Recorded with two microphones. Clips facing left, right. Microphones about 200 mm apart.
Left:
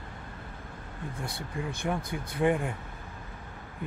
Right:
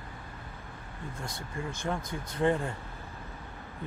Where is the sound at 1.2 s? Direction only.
60° left (ahead or behind).